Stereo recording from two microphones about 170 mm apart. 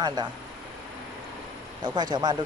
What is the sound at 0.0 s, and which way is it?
Speech, 25° right (ahead or behind).